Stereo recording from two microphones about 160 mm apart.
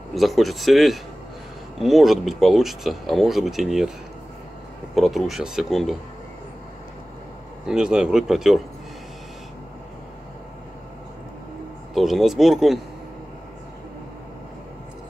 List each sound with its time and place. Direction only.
0.1 s speech: centre (ahead or behind)
4.9 s speech: centre (ahead or behind)
7.6 s speech: 5° right (ahead or behind)
11.9 s speech: centre (ahead or behind)